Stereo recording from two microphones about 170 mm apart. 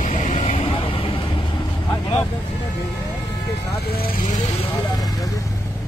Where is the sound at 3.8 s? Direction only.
65° left (ahead or behind).